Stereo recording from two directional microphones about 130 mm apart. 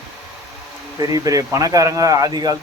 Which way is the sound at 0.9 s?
25° right (ahead or behind).